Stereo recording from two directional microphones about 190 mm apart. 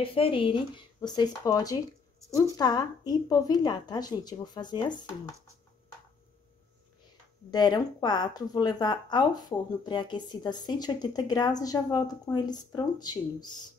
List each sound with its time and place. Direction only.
0.0 s speech: 30° left (ahead or behind)
7.5 s speech: 20° left (ahead or behind)